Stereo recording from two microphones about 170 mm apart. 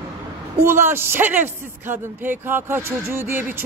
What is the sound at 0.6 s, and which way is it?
Speech, 15° right (ahead or behind).